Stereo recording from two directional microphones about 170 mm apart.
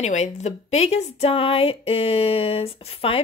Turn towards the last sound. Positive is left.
turn(degrees=35)  # may be behind; listen again after turning